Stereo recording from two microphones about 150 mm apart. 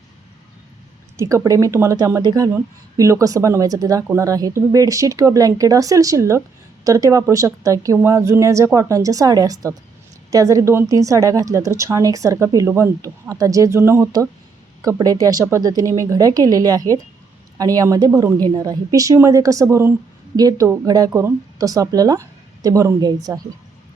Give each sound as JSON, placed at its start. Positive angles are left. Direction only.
{"t": 1.1, "sound": "speech", "side_deg": -20}